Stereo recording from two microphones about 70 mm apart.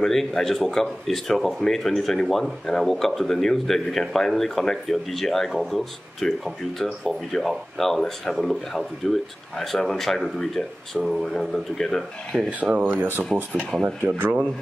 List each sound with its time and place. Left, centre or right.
0.0 s speech: centre
12.4 s speech: right
12.9 s speech: right